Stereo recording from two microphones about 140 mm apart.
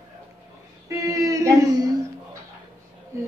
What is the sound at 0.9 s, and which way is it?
A woman's voice, 25° right (ahead or behind).